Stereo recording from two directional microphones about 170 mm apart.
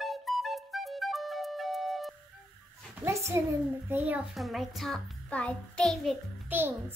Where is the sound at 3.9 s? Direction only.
10° right (ahead or behind).